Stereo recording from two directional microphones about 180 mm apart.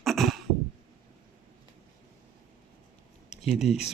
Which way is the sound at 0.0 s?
Centre (ahead or behind).